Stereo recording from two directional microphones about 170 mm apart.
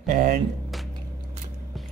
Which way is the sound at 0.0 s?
55° right (ahead or behind).